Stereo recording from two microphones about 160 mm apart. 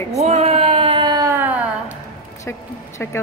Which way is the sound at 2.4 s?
20° left (ahead or behind).